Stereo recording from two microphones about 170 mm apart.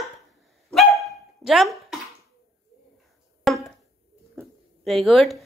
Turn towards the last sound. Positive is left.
turn(degrees=0)  # may be behind; listen again after turning